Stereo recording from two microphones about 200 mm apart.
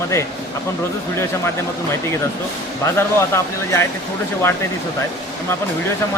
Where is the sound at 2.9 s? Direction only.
10° left (ahead or behind).